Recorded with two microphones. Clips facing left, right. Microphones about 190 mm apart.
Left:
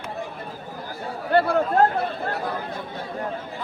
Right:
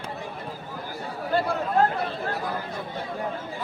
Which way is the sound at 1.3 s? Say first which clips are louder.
Left 6 dB; 65° left (ahead or behind).